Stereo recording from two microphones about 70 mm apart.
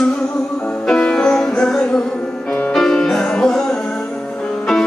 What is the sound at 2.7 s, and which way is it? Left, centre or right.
Music, centre.